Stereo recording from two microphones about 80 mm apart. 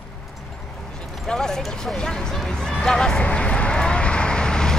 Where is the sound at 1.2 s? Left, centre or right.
Centre.